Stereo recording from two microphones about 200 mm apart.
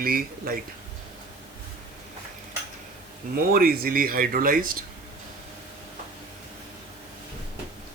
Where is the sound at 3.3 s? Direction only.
50° right (ahead or behind).